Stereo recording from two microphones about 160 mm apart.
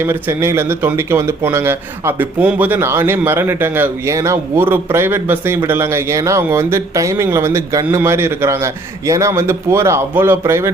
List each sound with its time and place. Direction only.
0.0 s speech: 15° right (ahead or behind)